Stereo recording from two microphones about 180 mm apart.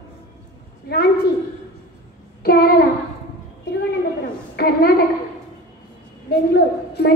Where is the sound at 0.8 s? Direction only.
60° left (ahead or behind).